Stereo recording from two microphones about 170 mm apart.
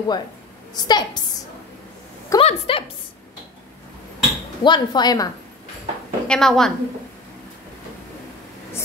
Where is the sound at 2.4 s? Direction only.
35° left (ahead or behind).